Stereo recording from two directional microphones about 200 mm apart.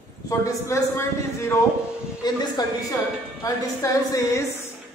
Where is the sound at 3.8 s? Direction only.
15° left (ahead or behind).